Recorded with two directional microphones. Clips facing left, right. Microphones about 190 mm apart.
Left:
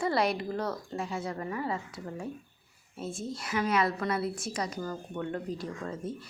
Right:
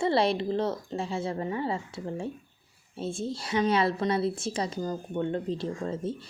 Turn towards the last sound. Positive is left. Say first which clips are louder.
# right 5 dB
turn(degrees=-30)  # may be behind; listen again after turning